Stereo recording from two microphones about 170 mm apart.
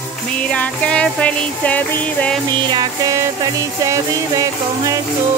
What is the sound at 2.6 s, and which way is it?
Music, 25° right (ahead or behind).